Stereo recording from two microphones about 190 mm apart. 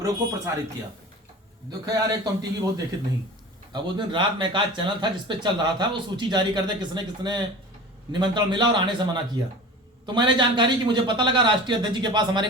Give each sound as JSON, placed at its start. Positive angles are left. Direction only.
{"t": 0.0, "sound": "a man's voice", "side_deg": -20}
{"t": 1.7, "sound": "a man's voice", "side_deg": -20}